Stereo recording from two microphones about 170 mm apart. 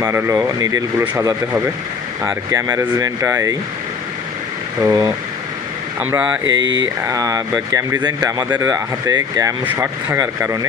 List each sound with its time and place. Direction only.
0.0 s speech: 15° right (ahead or behind)
4.8 s speech: 20° right (ahead or behind)
6.6 s speech: 90° right
7.0 s speech: 20° right (ahead or behind)